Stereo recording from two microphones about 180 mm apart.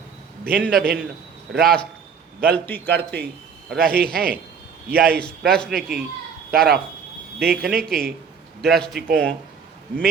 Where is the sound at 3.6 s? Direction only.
60° right (ahead or behind).